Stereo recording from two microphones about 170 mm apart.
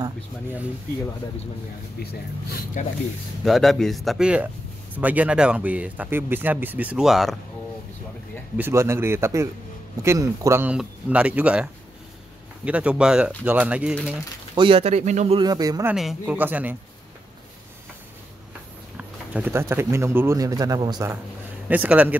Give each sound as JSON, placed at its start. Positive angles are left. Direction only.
{"t": 2.0, "sound": "speech", "side_deg": 65}
{"t": 3.4, "sound": "speech", "side_deg": 0}
{"t": 8.5, "sound": "speech", "side_deg": -15}
{"t": 14.5, "sound": "speech", "side_deg": -30}
{"t": 15.4, "sound": "speech", "side_deg": -25}
{"t": 15.9, "sound": "speech", "side_deg": -5}
{"t": 18.9, "sound": "speech", "side_deg": -5}
{"t": 21.6, "sound": "speech", "side_deg": -10}